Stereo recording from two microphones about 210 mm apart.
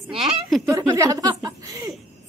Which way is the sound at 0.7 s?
15° right (ahead or behind).